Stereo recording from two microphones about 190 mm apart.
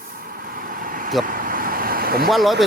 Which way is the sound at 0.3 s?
50° right (ahead or behind).